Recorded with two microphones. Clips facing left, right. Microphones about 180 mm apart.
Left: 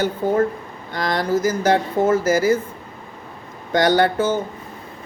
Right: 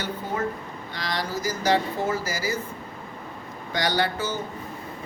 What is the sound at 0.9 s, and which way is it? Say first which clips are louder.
Speech: left 10 dB; 50° left (ahead or behind).